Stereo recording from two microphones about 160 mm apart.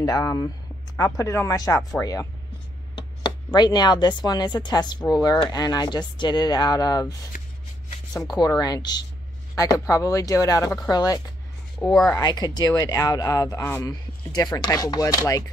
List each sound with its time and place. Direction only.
0.0 s speech: 20° left (ahead or behind)
3.0 s a sound: 25° left (ahead or behind)
3.5 s speech: 25° left (ahead or behind)
8.2 s speech: 25° left (ahead or behind)
11.8 s speech: centre (ahead or behind)
12.1 s speech: 25° left (ahead or behind)